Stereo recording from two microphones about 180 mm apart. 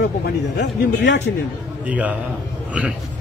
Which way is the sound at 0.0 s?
70° left (ahead or behind).